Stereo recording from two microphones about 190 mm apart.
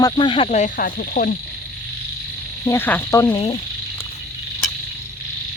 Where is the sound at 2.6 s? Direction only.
10° left (ahead or behind).